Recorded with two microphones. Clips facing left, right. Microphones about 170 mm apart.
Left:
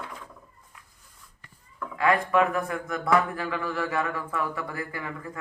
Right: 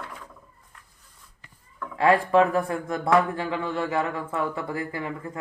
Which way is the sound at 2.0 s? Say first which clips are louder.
Right 4 dB; 30° right (ahead or behind).